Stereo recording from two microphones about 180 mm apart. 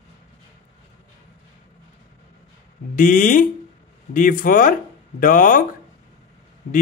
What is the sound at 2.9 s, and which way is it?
Speech, 50° left (ahead or behind).